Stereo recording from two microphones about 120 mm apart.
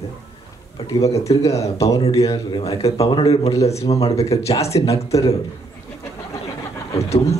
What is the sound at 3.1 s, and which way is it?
A man's voice, 50° left (ahead or behind).